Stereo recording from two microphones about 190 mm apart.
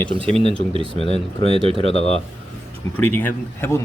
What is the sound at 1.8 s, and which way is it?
Speech, 30° left (ahead or behind).